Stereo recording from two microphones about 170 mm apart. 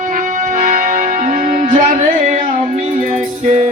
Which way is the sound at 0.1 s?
50° right (ahead or behind).